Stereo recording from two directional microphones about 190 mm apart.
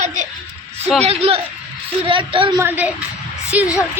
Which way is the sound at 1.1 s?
30° right (ahead or behind).